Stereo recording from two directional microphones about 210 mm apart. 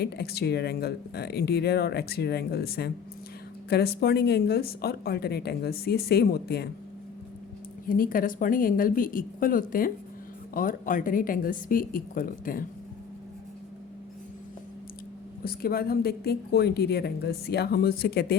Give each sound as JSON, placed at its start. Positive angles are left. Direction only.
{"t": 0.0, "sound": "speech", "side_deg": 50}
{"t": 7.9, "sound": "speech", "side_deg": 40}
{"t": 15.4, "sound": "speech", "side_deg": 45}